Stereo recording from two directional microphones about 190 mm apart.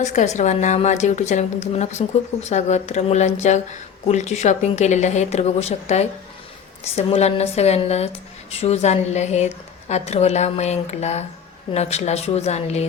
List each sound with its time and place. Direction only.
0.0 s a woman's voice: 40° left (ahead or behind)